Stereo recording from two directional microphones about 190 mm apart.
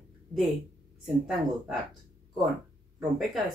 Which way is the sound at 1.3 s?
Centre (ahead or behind).